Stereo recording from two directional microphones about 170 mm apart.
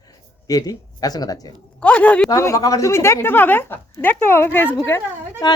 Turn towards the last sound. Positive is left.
turn(degrees=15)  # may be behind; listen again after turning